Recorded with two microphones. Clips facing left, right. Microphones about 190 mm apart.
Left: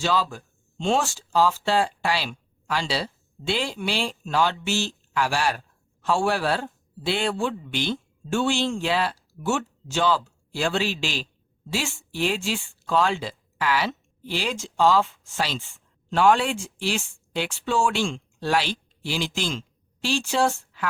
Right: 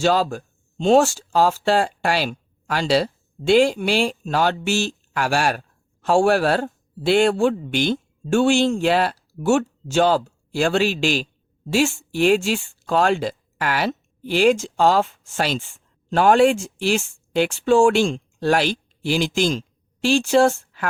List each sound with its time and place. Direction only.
0.0 s speech: 45° right (ahead or behind)